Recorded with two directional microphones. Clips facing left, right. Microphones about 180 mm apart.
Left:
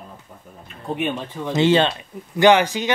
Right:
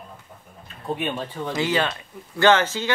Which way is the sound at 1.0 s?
20° left (ahead or behind).